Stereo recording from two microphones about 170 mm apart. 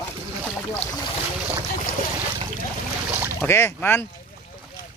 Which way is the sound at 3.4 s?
15° left (ahead or behind).